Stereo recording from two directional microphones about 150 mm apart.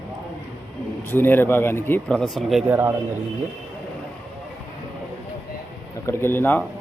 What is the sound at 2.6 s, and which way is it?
Speech, 15° right (ahead or behind).